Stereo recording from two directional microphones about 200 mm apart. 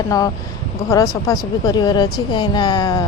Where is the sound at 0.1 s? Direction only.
15° left (ahead or behind).